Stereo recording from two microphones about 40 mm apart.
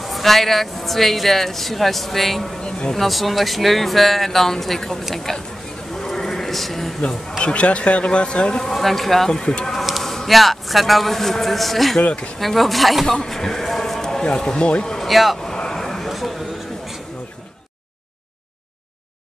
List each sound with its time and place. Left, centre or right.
0.0 s speech: centre
5.9 s a sound: centre
7.0 s speech: centre
8.6 s speech: centre
9.3 s speech: centre
10.0 s speech: centre
12.0 s speech: left
12.4 s speech: centre
14.8 s a sound: centre
15.0 s speech: centre
15.4 s vehicle: centre
15.8 s a sound: centre